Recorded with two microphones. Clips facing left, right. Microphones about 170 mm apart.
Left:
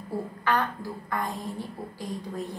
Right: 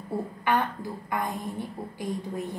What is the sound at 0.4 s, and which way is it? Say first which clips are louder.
A woman's voice: right 1 dB; 20° right (ahead or behind).